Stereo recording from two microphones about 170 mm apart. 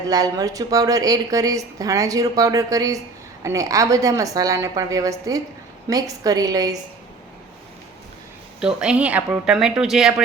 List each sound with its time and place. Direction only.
0.1 s a woman's voice: 20° right (ahead or behind)
8.6 s speech: 5° right (ahead or behind)